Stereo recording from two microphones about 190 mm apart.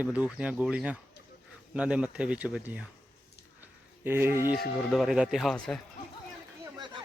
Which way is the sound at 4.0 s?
10° right (ahead or behind).